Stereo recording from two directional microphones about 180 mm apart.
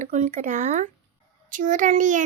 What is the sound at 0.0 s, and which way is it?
A child's voice, 45° right (ahead or behind).